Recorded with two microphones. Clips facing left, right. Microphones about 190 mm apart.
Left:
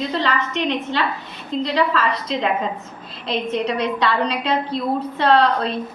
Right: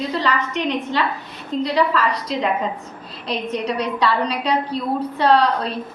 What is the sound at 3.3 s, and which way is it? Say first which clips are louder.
Speech: left 2 dB; 40° right (ahead or behind).